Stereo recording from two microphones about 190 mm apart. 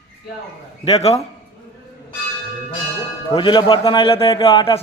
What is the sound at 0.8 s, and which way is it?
Speech, 35° left (ahead or behind).